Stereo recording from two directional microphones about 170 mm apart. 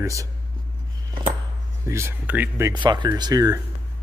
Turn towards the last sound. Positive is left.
turn(degrees=-20)  # may be behind; listen again after turning